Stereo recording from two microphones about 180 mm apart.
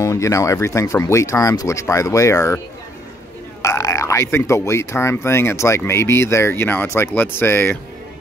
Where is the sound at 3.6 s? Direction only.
20° left (ahead or behind).